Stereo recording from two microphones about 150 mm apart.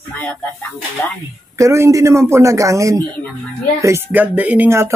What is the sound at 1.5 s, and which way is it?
A man's voice, 20° right (ahead or behind).